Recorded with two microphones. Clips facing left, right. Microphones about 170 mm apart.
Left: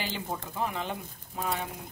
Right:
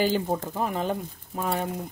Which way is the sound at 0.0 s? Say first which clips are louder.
Right 11 dB; 45° right (ahead or behind).